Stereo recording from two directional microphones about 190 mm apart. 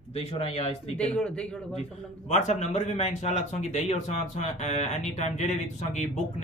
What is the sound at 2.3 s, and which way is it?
Speech, 35° left (ahead or behind).